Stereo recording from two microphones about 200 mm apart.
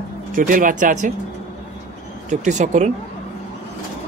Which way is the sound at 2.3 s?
35° right (ahead or behind).